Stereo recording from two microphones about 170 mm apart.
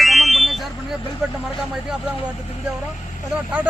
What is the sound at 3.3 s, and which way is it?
Speech, 5° right (ahead or behind).